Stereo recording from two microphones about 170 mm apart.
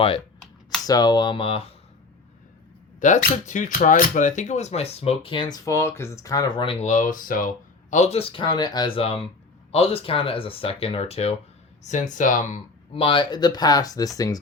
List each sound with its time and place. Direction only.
0.9 s speech: 25° left (ahead or behind)
3.0 s speech: 45° left (ahead or behind); by 6.7 s 25° left (ahead or behind)
6.8 s speech: 50° left (ahead or behind)
12.9 s speech: 30° left (ahead or behind)